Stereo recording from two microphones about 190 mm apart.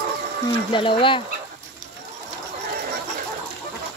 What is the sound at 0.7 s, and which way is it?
Speech, 25° left (ahead or behind).